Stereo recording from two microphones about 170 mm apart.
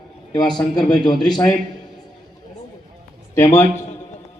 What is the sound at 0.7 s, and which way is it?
Speech, 25° left (ahead or behind).